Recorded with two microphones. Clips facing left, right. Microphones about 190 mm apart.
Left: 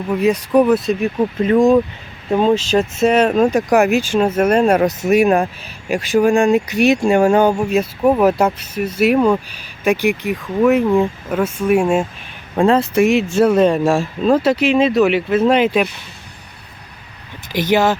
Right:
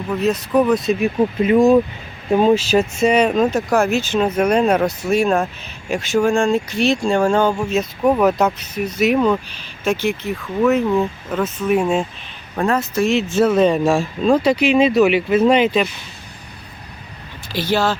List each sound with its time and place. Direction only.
0.1 s speech: 10° left (ahead or behind)
1.0 s speech: 15° right (ahead or behind)
3.0 s speech: 5° left (ahead or behind)
12.5 s speech: 30° left (ahead or behind)
13.0 s speech: 10° left (ahead or behind)
17.5 s speech: 15° left (ahead or behind)